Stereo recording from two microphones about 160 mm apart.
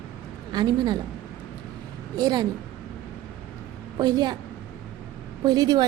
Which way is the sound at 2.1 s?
25° right (ahead or behind).